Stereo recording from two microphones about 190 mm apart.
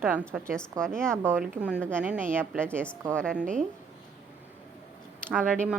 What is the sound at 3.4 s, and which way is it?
Speech, 40° right (ahead or behind).